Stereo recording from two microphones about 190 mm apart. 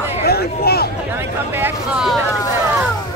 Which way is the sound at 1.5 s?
10° right (ahead or behind).